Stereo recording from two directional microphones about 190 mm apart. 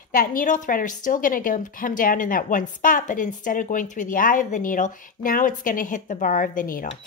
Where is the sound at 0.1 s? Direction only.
45° left (ahead or behind).